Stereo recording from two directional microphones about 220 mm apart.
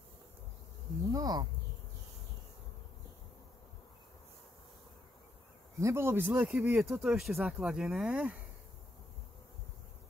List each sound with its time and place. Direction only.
1.1 s speech: 15° right (ahead or behind)
5.8 s speech: 10° right (ahead or behind)